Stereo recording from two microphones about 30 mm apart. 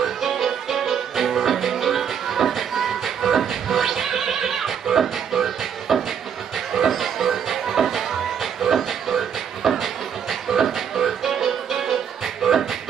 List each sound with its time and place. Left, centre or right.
0.0 s music: centre
8.6 s a sound: centre
10.5 s music: centre
12.4 s beatboxing: centre